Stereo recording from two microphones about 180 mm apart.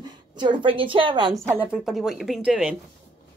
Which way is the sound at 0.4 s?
25° right (ahead or behind).